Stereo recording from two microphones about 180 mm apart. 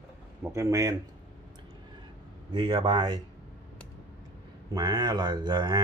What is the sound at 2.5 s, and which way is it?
Speech, 25° right (ahead or behind).